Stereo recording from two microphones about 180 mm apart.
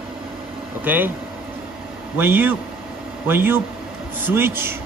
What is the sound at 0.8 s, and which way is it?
Speech, 10° right (ahead or behind).